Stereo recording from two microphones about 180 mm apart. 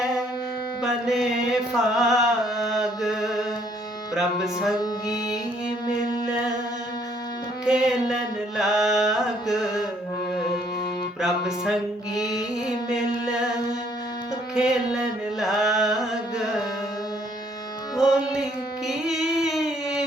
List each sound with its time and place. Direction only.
0.8 s music: centre (ahead or behind)
1.7 s chant: centre (ahead or behind)
4.1 s music: centre (ahead or behind)
4.8 s music: 20° left (ahead or behind)
5.8 s a sound: 25° left (ahead or behind)
7.6 s music: 5° right (ahead or behind)
11.2 s music: centre (ahead or behind)
12.1 s music: 20° left (ahead or behind)
14.5 s a sound: 5° right (ahead or behind)
17.9 s music: centre (ahead or behind)
18.9 s singing: centre (ahead or behind)